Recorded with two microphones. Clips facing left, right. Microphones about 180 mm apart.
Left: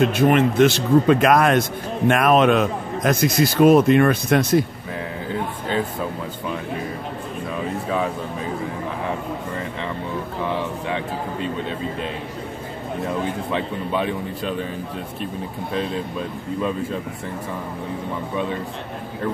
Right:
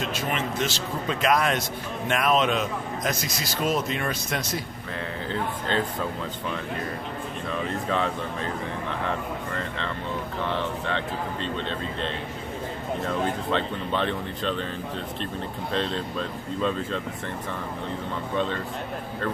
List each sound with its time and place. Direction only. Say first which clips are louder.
0.0 s a man's voice: left 12 dB; 55° left (ahead or behind)
5.3 s speech: left 3 dB; 10° left (ahead or behind)
7.9 s speech: left 3 dB; 10° left (ahead or behind)
13.5 s speech: left 2 dB; 10° left (ahead or behind)
15.7 s speech: left 3 dB; 10° left (ahead or behind)